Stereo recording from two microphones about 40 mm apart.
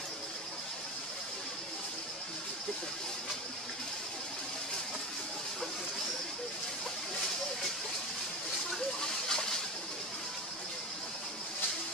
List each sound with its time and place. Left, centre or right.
9.0 s water: centre